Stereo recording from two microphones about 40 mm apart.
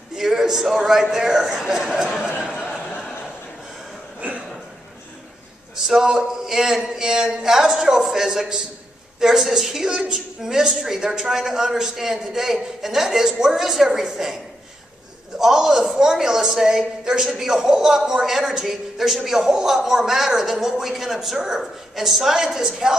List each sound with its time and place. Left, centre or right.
0.1 s a woman's voice: centre
4.2 s a sound: right
5.8 s a woman's voice: centre